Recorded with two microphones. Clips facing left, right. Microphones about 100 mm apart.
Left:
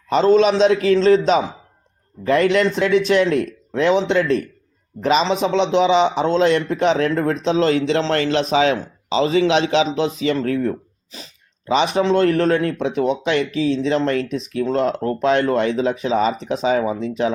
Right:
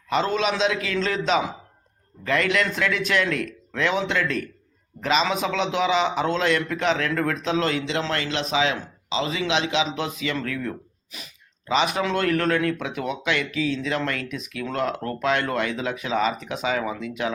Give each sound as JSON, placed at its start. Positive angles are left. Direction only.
{"t": 0.1, "sound": "speech", "side_deg": 35}